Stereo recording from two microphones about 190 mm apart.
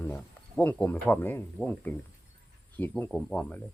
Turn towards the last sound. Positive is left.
turn(degrees=5)  # may be behind; listen again after turning